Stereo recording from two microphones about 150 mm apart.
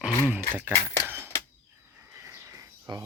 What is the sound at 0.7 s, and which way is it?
Speech, 15° left (ahead or behind).